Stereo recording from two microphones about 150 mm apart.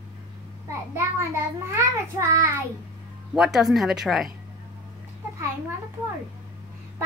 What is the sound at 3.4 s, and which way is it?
Speech, centre (ahead or behind).